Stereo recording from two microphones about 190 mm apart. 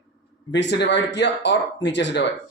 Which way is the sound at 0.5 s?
65° left (ahead or behind).